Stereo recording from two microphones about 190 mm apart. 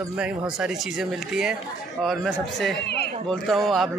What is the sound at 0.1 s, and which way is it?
Speech, 5° right (ahead or behind).